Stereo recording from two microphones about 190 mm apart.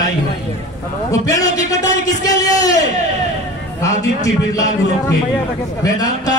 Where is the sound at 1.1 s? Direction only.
15° left (ahead or behind).